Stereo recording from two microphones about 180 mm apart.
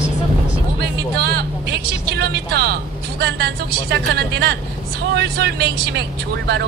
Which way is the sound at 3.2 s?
65° right (ahead or behind).